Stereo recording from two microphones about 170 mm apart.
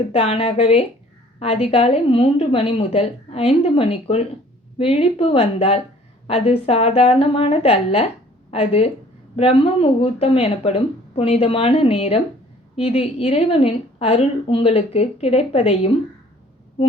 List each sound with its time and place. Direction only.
0.1 s a woman's voice: 35° left (ahead or behind)